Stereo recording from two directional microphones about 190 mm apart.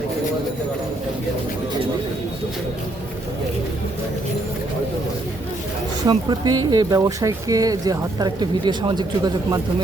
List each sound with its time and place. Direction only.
6.1 s speech: 20° right (ahead or behind)